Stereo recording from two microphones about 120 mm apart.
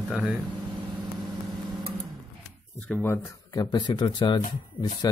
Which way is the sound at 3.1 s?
25° left (ahead or behind).